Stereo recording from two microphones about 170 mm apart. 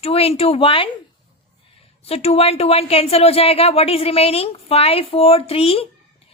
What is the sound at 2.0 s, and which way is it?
A woman's voice, 35° left (ahead or behind).